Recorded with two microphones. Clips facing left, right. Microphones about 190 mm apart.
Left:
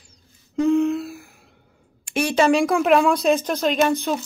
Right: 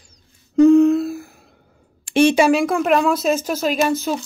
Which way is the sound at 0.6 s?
40° right (ahead or behind).